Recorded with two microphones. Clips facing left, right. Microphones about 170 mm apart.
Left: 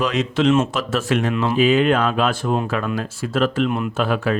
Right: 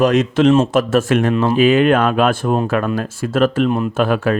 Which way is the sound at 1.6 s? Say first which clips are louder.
Right 3 dB; 55° right (ahead or behind).